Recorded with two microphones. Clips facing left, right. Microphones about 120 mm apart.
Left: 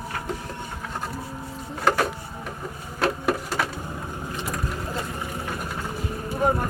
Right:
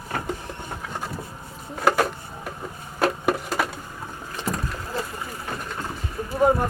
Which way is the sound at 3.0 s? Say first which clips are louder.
Right 1 dB; 5° right (ahead or behind).